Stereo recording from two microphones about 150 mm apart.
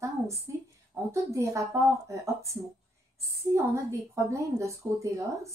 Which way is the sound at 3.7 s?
20° right (ahead or behind).